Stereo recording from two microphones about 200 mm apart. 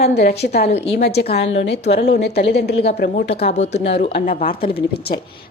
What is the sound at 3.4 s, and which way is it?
A woman's voice, 35° left (ahead or behind).